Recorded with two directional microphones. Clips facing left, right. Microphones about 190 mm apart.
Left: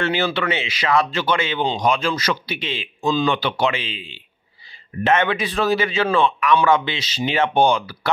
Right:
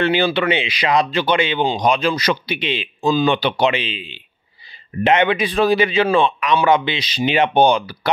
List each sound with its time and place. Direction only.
0.0 s a man's voice: 20° right (ahead or behind)